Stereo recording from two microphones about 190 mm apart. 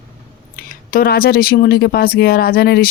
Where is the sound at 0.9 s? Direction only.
50° left (ahead or behind).